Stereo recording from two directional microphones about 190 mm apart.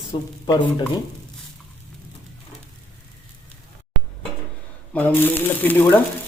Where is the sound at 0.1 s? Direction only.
20° left (ahead or behind).